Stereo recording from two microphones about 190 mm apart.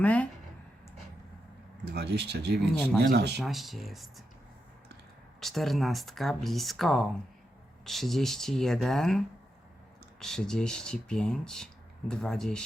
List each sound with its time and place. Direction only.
0.0 s speech: 5° left (ahead or behind)
1.8 s speech: 60° right (ahead or behind)
2.7 s speech: 5° left (ahead or behind)
3.0 s speech: 60° right (ahead or behind)
3.3 s speech: centre (ahead or behind)
5.4 s speech: centre (ahead or behind)